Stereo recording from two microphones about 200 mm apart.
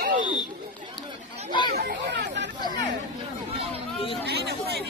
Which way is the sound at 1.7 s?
50° right (ahead or behind).